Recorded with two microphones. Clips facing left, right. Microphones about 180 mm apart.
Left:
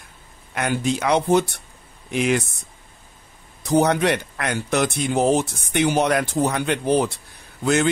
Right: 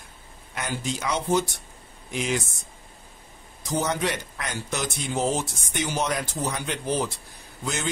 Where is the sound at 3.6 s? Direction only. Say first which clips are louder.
Left 8 dB; 65° left (ahead or behind).